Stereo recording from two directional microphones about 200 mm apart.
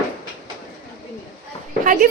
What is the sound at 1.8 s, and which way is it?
Speech, 40° right (ahead or behind).